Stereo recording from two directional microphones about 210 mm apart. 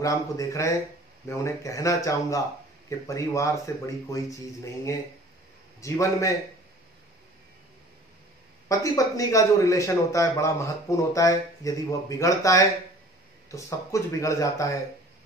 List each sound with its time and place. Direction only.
0.0 s a man's voice: 15° left (ahead or behind)
5.8 s a man's voice: 15° left (ahead or behind)
8.6 s a man's voice: 15° left (ahead or behind)